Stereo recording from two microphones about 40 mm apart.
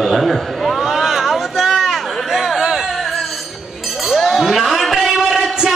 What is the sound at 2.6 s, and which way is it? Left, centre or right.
Singing, centre.